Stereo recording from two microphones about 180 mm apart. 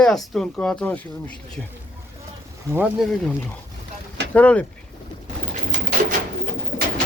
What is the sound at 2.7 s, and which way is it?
Speech, 5° right (ahead or behind).